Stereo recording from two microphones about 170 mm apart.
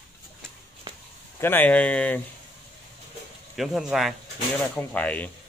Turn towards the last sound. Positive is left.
turn(degrees=10)  # may be behind; listen again after turning